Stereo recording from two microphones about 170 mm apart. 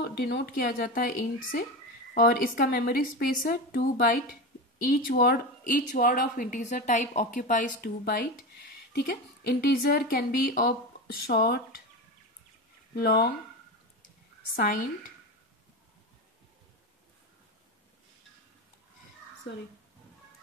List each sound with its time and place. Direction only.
0.0 s speech: 75° left (ahead or behind)
0.7 s a woman's voice: 60° left (ahead or behind)
12.9 s speech: 70° left (ahead or behind)
14.5 s a woman's voice: 50° left (ahead or behind)